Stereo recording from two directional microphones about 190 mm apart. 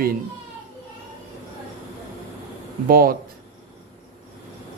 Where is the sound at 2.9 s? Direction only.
50° right (ahead or behind).